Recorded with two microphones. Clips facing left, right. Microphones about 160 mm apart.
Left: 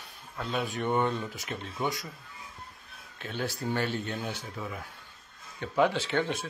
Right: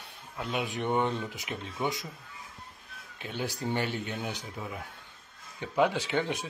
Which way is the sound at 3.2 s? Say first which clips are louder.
Left 1 dB; 15° right (ahead or behind).